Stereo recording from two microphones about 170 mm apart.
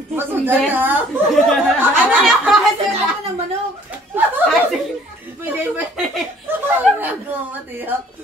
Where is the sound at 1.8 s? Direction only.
10° right (ahead or behind).